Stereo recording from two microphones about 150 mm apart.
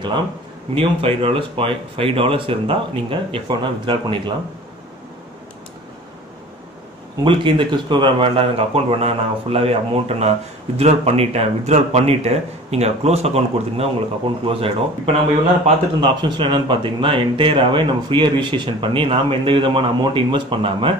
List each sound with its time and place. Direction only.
0.7 s speech: 40° right (ahead or behind)
7.2 s speech: 35° right (ahead or behind)